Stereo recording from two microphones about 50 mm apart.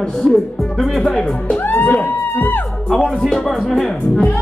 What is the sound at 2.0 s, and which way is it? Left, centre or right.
Speech, left.